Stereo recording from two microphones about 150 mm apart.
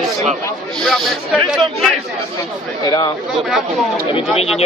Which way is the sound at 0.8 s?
Centre (ahead or behind).